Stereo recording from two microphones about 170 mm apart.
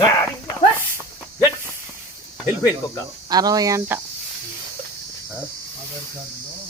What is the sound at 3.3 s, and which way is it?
Speech, 20° right (ahead or behind).